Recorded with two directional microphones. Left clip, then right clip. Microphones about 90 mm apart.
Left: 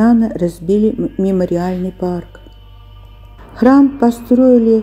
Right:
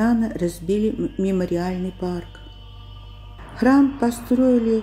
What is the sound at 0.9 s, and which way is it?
Speech, 20° left (ahead or behind).